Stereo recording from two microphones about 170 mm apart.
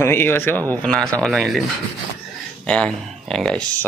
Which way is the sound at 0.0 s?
15° left (ahead or behind).